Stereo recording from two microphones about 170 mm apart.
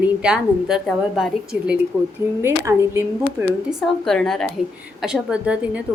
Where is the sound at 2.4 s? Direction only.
15° right (ahead or behind).